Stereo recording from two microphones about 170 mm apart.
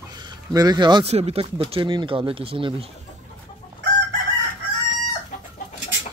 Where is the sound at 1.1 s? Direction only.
40° right (ahead or behind).